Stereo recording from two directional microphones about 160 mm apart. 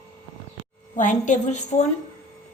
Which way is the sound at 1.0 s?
50° left (ahead or behind).